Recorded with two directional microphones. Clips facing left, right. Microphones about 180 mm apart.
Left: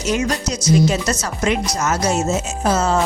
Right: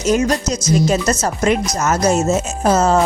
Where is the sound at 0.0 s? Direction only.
45° right (ahead or behind).